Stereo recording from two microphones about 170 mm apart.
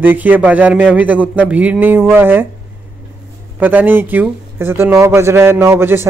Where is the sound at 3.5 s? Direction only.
10° right (ahead or behind).